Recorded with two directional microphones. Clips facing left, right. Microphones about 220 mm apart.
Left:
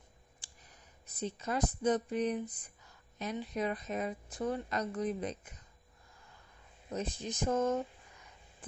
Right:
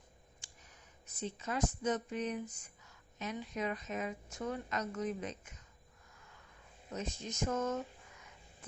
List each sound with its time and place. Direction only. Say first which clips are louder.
0.4 s clicking: even; 35° left (ahead or behind)
1.0 s a woman's voice: left 3 dB; 35° left (ahead or behind)
6.9 s a woman's voice: left 4 dB; 35° left (ahead or behind)